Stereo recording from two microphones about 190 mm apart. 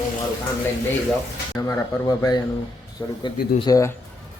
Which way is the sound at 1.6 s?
15° left (ahead or behind).